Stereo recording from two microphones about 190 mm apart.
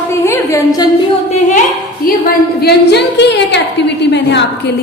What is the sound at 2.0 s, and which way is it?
A woman's voice, 50° left (ahead or behind).